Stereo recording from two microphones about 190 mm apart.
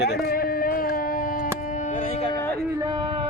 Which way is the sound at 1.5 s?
40° left (ahead or behind).